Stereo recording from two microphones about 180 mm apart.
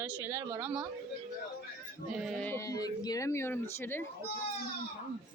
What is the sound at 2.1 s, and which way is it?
Speech, centre (ahead or behind).